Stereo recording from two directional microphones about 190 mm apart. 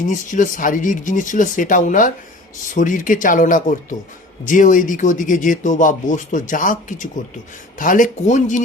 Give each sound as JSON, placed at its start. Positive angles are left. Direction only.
{"t": 0.0, "sound": "speech", "side_deg": 40}